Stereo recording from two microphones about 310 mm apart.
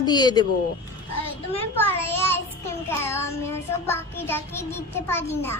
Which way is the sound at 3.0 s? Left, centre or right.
Centre.